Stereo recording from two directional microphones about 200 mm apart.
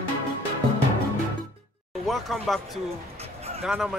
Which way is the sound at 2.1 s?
Centre (ahead or behind).